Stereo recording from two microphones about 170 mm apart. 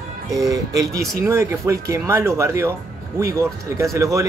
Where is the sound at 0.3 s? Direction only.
20° right (ahead or behind).